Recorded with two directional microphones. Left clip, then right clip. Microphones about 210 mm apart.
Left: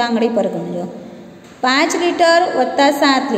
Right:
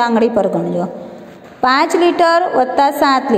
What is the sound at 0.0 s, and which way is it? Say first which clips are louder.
A woman's voice: right 3 dB; 20° right (ahead or behind).